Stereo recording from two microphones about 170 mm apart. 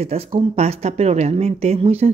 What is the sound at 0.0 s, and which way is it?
Speech, 35° right (ahead or behind).